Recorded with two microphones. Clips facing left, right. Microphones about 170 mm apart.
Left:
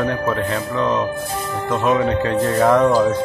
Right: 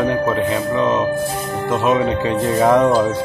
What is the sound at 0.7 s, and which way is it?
Speech, 20° right (ahead or behind).